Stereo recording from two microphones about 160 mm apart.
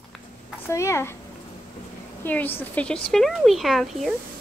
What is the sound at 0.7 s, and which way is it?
Speech, 20° left (ahead or behind).